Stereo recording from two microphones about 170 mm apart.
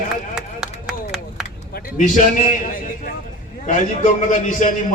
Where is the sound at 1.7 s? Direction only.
50° left (ahead or behind).